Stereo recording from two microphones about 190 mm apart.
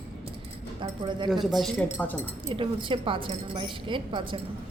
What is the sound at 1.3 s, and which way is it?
Speech, centre (ahead or behind).